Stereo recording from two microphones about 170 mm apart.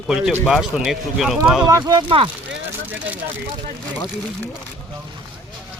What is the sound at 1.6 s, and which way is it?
Speech, 20° right (ahead or behind).